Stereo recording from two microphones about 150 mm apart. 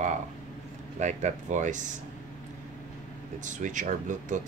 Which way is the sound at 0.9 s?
55° right (ahead or behind).